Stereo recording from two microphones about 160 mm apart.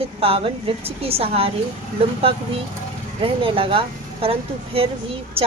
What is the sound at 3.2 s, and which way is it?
A woman's voice, 35° right (ahead or behind).